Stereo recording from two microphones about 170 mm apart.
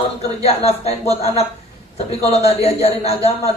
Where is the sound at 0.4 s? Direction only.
35° left (ahead or behind).